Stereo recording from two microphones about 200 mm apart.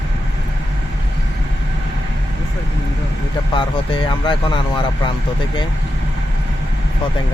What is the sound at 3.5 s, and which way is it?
Speech, 25° left (ahead or behind).